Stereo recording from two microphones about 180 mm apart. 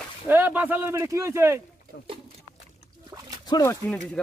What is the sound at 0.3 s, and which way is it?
Speech, 10° right (ahead or behind).